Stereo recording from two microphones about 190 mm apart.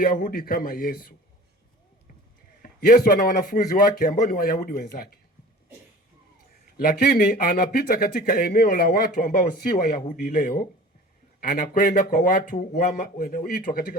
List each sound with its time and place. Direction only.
0.0 s speech: 50° left (ahead or behind)
2.6 s speech: 50° left (ahead or behind)
6.7 s speech: 50° left (ahead or behind)